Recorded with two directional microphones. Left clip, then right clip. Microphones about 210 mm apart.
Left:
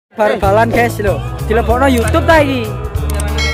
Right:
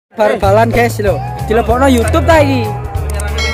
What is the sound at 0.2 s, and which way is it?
Speech, 5° right (ahead or behind).